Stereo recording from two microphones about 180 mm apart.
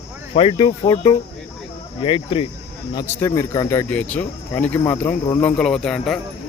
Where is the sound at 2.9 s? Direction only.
20° left (ahead or behind).